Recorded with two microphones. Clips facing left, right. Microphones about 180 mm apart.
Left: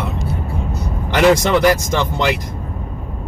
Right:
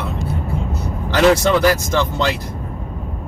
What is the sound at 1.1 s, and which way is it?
Speech, 15° left (ahead or behind).